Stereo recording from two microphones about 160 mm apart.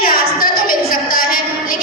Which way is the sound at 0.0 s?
65° left (ahead or behind).